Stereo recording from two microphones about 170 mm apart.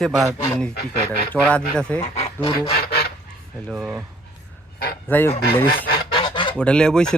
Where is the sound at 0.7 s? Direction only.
65° left (ahead or behind).